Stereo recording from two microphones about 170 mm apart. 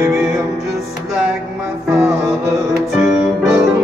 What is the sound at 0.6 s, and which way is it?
Music, 5° right (ahead or behind).